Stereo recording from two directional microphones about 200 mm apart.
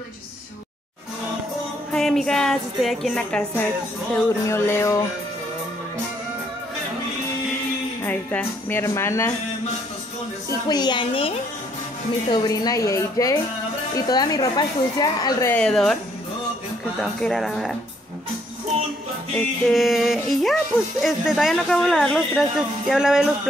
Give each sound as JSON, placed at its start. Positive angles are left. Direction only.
{"t": 1.9, "sound": "speech", "side_deg": 0}
{"t": 8.0, "sound": "speech", "side_deg": 10}
{"t": 10.7, "sound": "a woman's voice", "side_deg": 20}
{"t": 15.5, "sound": "speech", "side_deg": 5}
{"t": 17.0, "sound": "speech", "side_deg": 0}
{"t": 19.3, "sound": "speech", "side_deg": 0}